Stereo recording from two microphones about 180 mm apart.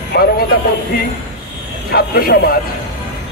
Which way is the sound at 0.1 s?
60° left (ahead or behind).